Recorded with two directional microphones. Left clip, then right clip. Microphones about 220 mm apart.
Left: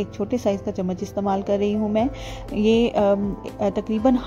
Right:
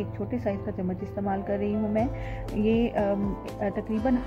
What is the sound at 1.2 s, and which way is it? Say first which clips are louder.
A woman's voice: left 7 dB; 40° left (ahead or behind).